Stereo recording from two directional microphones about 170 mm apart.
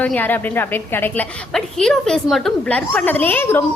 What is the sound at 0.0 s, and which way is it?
A woman's voice, 10° left (ahead or behind).